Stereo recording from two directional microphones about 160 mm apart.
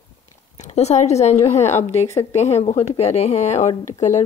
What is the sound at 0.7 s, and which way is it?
A woman's voice, 45° left (ahead or behind).